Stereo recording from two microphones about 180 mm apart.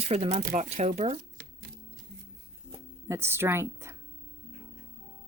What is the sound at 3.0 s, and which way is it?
Speech, 15° right (ahead or behind).